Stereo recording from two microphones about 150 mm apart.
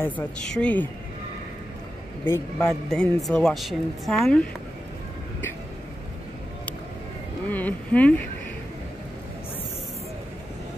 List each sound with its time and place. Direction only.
0.0 s speech: 10° left (ahead or behind)
2.2 s speech: 15° left (ahead or behind)
2.7 s a woman's voice: 5° left (ahead or behind)
7.4 s speech: 10° left (ahead or behind)